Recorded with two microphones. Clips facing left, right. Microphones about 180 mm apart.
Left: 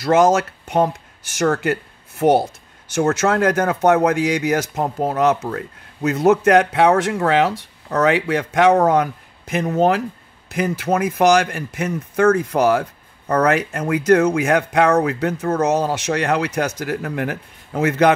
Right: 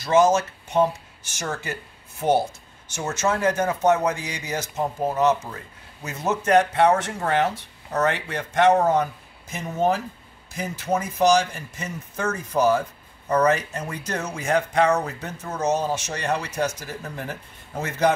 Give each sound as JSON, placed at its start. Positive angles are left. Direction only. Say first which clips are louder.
{"t": 0.0, "sound": "speech", "louder": "left 4 dB", "side_deg": 65}